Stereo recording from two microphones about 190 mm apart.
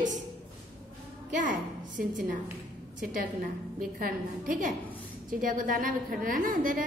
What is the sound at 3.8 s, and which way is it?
A woman's voice, 45° right (ahead or behind).